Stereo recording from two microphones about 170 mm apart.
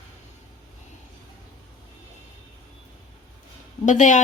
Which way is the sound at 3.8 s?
45° left (ahead or behind).